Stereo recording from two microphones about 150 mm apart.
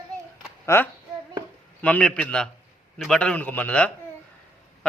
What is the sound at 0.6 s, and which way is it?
A man's voice, 15° left (ahead or behind).